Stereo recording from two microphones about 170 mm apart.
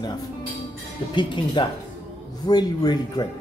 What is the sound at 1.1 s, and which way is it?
Speech, 25° left (ahead or behind).